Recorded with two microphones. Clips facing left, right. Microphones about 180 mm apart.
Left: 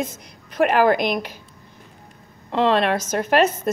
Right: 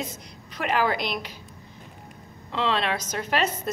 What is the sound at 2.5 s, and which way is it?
Speech, 50° left (ahead or behind).